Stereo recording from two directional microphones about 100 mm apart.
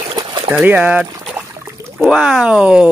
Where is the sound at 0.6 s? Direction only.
15° right (ahead or behind).